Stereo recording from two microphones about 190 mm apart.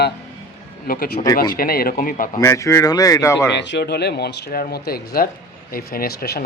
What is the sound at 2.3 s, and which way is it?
Speech, 15° left (ahead or behind).